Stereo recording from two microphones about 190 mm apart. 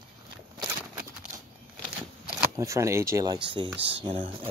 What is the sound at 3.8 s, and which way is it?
Speech, 65° right (ahead or behind).